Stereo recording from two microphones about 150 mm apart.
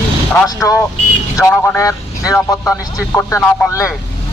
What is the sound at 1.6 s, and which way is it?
Speech, 20° left (ahead or behind).